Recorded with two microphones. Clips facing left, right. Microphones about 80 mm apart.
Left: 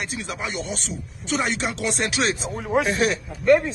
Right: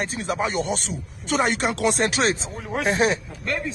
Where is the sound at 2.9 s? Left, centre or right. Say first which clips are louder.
Right 1 dB; right.